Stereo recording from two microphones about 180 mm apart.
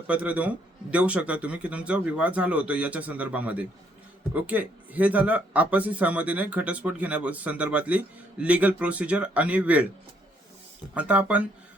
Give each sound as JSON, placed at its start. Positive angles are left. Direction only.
{"t": 0.1, "sound": "speech", "side_deg": -10}
{"t": 10.9, "sound": "speech", "side_deg": -5}